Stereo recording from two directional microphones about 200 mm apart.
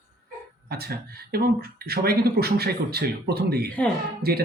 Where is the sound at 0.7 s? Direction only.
50° right (ahead or behind).